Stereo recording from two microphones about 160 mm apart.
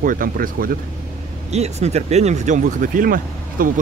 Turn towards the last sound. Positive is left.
turn(degrees=-60)  # may be behind; listen again after turning